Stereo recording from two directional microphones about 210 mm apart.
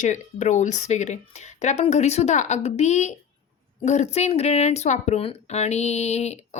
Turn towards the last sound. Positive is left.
turn(degrees=30)  # may be behind; listen again after turning